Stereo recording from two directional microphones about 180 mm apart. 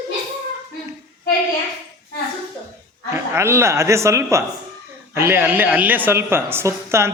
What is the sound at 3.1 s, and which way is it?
A woman's voice, 15° right (ahead or behind).